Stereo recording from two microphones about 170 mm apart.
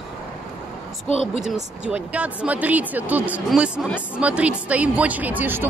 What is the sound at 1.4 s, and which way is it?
Speech, 5° right (ahead or behind).